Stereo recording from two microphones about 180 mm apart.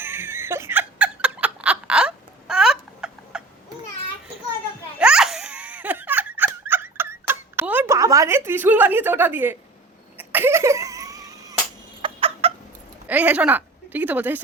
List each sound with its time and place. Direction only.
0.0 s giggle: 10° right (ahead or behind)
4.9 s laughter: 5° right (ahead or behind)
10.2 s cough: 10° right (ahead or behind)
12.0 s chicken: 30° right (ahead or behind)
13.1 s a woman's voice: 10° right (ahead or behind)